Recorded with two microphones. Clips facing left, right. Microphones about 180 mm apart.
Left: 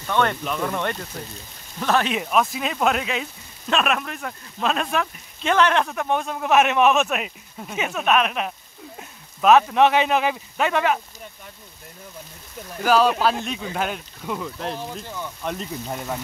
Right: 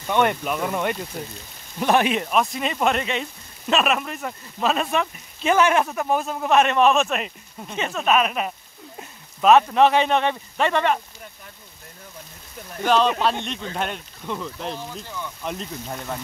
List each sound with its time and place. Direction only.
0.0 s speech: 15° right (ahead or behind)
2.0 s speech: centre (ahead or behind)
12.7 s speech: 5° left (ahead or behind)
14.9 s speech: 15° left (ahead or behind)
15.4 s speech: 5° left (ahead or behind)